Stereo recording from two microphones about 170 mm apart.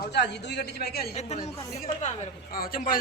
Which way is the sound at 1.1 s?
40° left (ahead or behind).